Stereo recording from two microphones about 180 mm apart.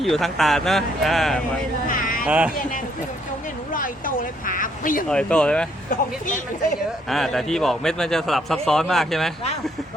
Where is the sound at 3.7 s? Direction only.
50° left (ahead or behind).